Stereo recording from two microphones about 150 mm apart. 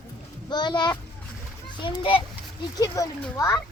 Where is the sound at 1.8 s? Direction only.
30° left (ahead or behind).